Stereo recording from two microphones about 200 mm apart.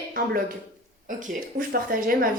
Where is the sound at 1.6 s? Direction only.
45° right (ahead or behind).